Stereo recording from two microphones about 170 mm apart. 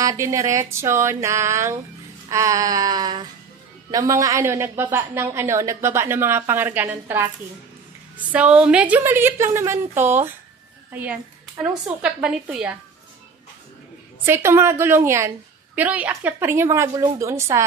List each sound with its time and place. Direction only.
0.0 s a woman's voice: 15° right (ahead or behind)
2.2 s a sound: 20° right (ahead or behind)
3.9 s a woman's voice: 20° right (ahead or behind)
8.3 s a woman's voice: 5° right (ahead or behind)
14.2 s a woman's voice: 15° right (ahead or behind)